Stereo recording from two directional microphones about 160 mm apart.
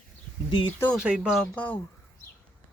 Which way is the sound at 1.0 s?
5° right (ahead or behind).